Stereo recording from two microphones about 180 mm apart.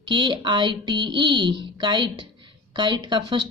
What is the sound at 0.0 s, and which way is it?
Speech, 25° right (ahead or behind).